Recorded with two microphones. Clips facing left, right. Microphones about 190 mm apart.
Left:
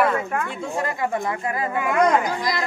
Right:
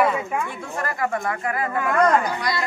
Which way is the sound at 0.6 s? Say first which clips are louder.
Left 2 dB; 20° left (ahead or behind).